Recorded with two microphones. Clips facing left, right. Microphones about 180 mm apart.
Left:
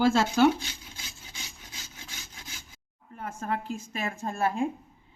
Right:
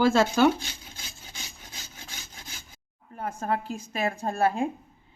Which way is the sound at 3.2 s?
35° right (ahead or behind).